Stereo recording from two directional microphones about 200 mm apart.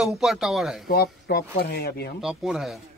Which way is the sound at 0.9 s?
50° left (ahead or behind).